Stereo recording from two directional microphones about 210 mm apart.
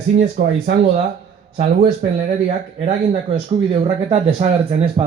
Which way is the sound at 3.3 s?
25° right (ahead or behind).